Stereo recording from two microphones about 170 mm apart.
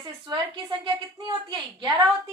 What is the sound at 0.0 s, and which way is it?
A woman's voice, 25° right (ahead or behind).